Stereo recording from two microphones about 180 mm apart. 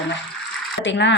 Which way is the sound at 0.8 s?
85° left.